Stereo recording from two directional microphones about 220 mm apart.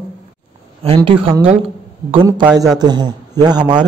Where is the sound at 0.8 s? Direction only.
25° right (ahead or behind).